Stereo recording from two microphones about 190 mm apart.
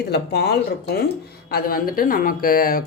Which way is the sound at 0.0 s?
60° left (ahead or behind).